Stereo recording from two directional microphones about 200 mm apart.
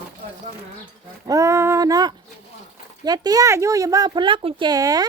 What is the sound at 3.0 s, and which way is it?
Speech, 20° right (ahead or behind).